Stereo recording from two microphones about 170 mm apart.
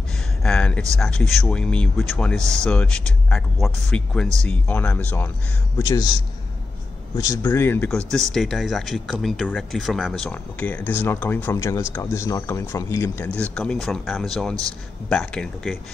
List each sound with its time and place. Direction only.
0.4 s a sound: 5° left (ahead or behind)
0.9 s speech: 5° left (ahead or behind)
5.8 s speech: 20° left (ahead or behind)
7.2 s speech: 15° left (ahead or behind)
13.4 s speech: 5° left (ahead or behind)